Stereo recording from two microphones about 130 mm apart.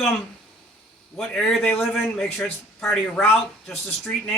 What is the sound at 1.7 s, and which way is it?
Speech, 15° left (ahead or behind).